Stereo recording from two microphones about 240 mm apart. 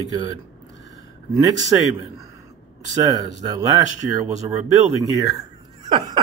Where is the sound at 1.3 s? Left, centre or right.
Centre.